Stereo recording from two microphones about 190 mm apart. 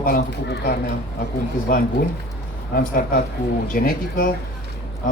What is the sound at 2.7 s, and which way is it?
A man's voice, 50° left (ahead or behind).